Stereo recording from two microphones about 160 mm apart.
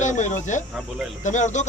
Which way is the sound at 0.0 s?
50° left (ahead or behind).